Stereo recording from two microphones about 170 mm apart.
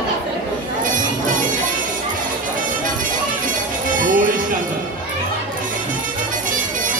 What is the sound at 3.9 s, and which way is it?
Music, 50° right (ahead or behind).